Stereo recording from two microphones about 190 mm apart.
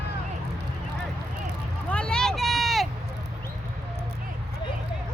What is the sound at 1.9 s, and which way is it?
Vehicle, 5° left (ahead or behind).